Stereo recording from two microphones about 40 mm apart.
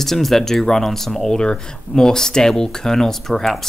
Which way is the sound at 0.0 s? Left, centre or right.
Centre.